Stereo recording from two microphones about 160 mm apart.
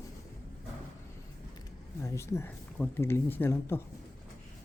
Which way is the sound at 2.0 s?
20° left (ahead or behind).